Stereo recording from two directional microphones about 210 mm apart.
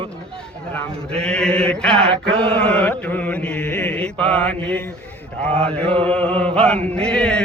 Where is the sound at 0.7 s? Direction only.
5° left (ahead or behind).